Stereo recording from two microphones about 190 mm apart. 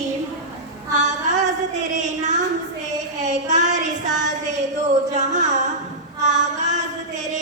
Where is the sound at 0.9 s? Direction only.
40° right (ahead or behind).